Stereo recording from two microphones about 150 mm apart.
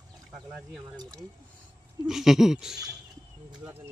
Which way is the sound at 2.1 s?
Centre (ahead or behind).